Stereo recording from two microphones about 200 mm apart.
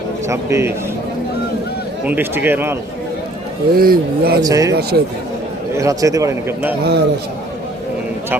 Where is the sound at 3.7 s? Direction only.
50° right (ahead or behind).